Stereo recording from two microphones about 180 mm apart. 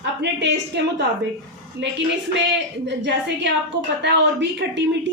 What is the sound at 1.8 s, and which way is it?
A woman's voice, 75° right (ahead or behind).